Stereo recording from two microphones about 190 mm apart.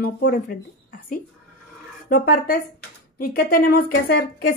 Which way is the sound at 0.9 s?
45° left (ahead or behind).